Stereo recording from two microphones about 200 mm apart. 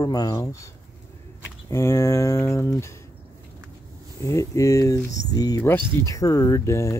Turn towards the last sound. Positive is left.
turn(degrees=15)  # may be behind; listen again after turning